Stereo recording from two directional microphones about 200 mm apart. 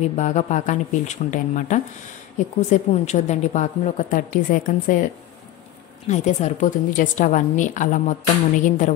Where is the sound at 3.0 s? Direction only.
35° left (ahead or behind).